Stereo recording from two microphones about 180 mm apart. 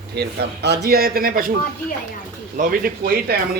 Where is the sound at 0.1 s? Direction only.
65° right (ahead or behind).